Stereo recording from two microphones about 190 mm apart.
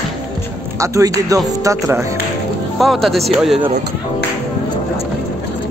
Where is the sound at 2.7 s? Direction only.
Centre (ahead or behind).